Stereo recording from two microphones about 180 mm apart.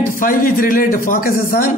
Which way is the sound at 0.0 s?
50° left (ahead or behind).